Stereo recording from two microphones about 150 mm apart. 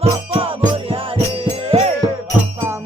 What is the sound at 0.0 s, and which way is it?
Music, 40° right (ahead or behind).